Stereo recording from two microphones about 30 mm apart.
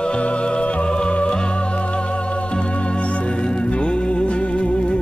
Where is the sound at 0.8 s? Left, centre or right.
Left.